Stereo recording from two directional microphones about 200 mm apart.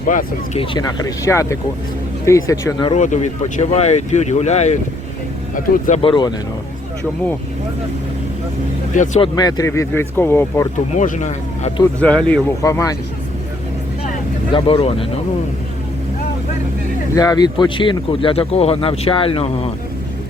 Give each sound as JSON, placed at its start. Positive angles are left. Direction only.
{"t": 0.0, "sound": "speech", "side_deg": 40}
{"t": 0.6, "sound": "speech", "side_deg": 20}
{"t": 2.9, "sound": "speech", "side_deg": 35}
{"t": 6.0, "sound": "speech", "side_deg": 25}
{"t": 9.0, "sound": "speech", "side_deg": 35}
{"t": 9.3, "sound": "speech", "side_deg": 20}
{"t": 10.9, "sound": "speech", "side_deg": 40}
{"t": 11.9, "sound": "speech", "side_deg": 5}
{"t": 14.5, "sound": "speech", "side_deg": 30}
{"t": 17.2, "sound": "speech", "side_deg": 20}